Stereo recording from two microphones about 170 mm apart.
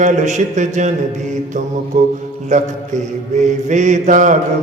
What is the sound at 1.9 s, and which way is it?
Mantra, 45° right (ahead or behind).